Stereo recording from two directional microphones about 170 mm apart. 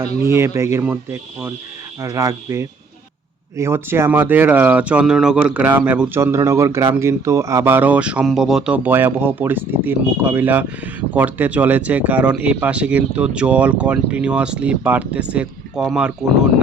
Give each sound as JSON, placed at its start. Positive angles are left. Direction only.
{"t": 0.3, "sound": "speech", "side_deg": -15}